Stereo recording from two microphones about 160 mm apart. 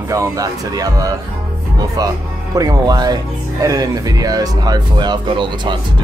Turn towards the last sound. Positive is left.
turn(degrees=-30)  # may be behind; listen again after turning